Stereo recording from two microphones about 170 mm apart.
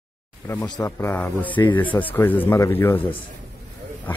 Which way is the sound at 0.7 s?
25° left (ahead or behind).